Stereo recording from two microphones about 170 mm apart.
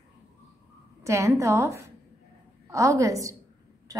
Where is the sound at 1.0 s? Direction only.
15° right (ahead or behind).